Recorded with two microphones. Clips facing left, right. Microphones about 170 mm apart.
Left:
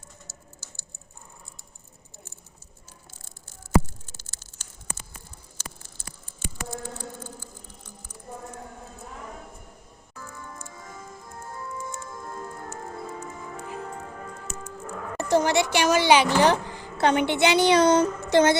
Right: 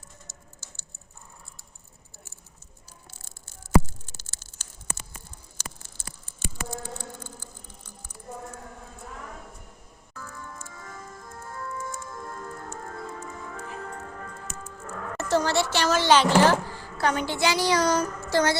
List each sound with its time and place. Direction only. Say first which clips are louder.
0.3 s typing: left 2 dB; 10° left (ahead or behind)
4.2 s a sound: even; 75° right (ahead or behind)
10.2 s music: even; 10° left (ahead or behind)
14.6 s a woman's voice: left 1 dB; 15° left (ahead or behind)